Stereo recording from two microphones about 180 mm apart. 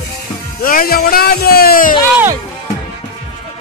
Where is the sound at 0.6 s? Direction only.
55° left (ahead or behind).